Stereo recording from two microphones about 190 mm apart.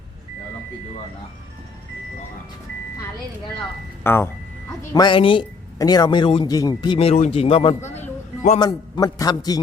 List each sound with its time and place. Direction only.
4.0 s speech: 10° left (ahead or behind)
4.9 s speech: 25° left (ahead or behind)
7.8 s music: 15° left (ahead or behind)
8.5 s speech: 25° left (ahead or behind)